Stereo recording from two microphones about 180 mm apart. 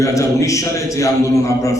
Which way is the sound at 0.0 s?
15° left (ahead or behind).